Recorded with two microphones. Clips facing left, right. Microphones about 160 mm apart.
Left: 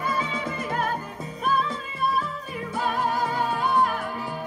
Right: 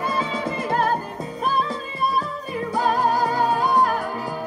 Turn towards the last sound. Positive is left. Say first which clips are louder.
# right 4 dB
turn(degrees=-40)  # may be behind; listen again after turning